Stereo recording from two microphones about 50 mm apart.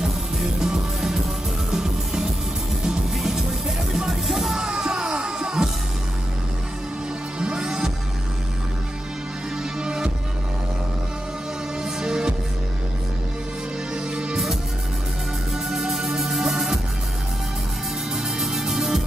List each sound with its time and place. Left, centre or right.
0.0 s music: centre
4.6 s a sound: centre
7.3 s music: centre
9.6 s music: centre
11.8 s music: centre
13.9 s music: centre
15.5 s music: centre
18.1 s music: centre